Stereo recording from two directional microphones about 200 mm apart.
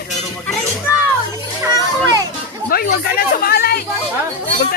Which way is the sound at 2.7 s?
50° left (ahead or behind).